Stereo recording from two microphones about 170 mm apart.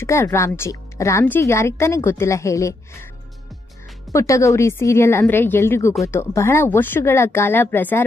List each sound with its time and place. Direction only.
0.0 s a woman's voice: 15° left (ahead or behind)
4.1 s a woman's voice: 15° left (ahead or behind)